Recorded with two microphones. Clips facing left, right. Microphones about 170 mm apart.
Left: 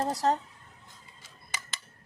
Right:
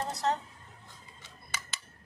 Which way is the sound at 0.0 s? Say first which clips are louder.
Left 4 dB; 40° left (ahead or behind).